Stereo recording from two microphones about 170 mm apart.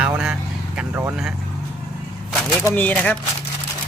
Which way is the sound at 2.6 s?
10° left (ahead or behind).